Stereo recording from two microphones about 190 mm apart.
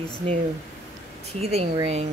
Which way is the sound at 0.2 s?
30° right (ahead or behind).